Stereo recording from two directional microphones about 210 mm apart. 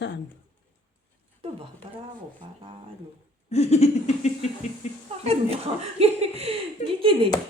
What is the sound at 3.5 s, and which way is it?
Laughter, 30° left (ahead or behind).